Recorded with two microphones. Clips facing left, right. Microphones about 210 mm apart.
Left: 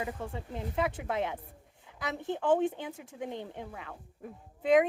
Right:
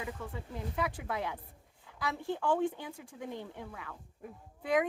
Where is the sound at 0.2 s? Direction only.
25° left (ahead or behind).